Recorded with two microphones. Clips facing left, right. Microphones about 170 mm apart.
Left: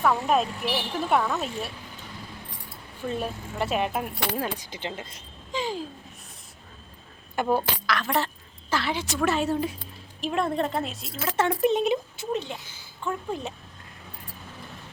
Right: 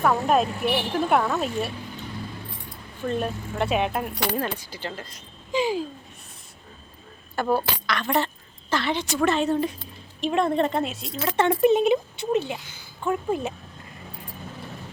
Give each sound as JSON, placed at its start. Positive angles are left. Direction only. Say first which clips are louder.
{"t": 0.0, "sound": "speech", "louder": "right 2 dB", "side_deg": 0}
{"t": 5.5, "sound": "speech", "louder": "right 6 dB", "side_deg": -10}
{"t": 7.3, "sound": "speech", "louder": "right 1 dB", "side_deg": 15}
{"t": 7.9, "sound": "speech", "louder": "right 3 dB", "side_deg": 0}